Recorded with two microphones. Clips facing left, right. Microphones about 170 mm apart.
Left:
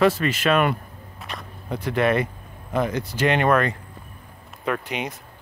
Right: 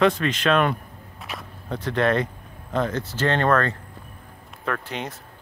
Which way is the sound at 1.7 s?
10° left (ahead or behind).